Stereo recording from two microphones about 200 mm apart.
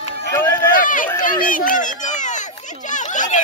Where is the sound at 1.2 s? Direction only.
45° left (ahead or behind).